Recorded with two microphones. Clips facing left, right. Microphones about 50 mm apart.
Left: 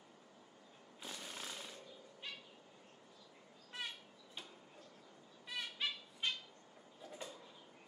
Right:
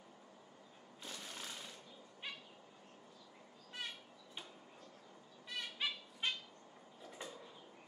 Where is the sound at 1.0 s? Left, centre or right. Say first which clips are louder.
Left 1 dB; centre.